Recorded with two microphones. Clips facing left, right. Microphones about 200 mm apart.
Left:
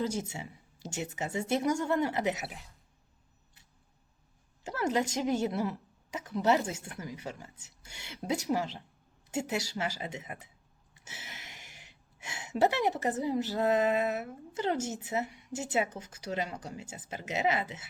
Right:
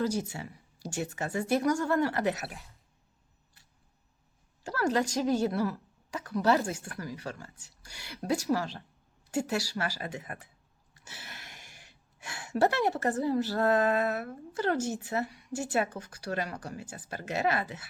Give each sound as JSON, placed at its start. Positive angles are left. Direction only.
{"t": 0.0, "sound": "a woman's voice", "side_deg": 20}
{"t": 4.6, "sound": "a woman's voice", "side_deg": 20}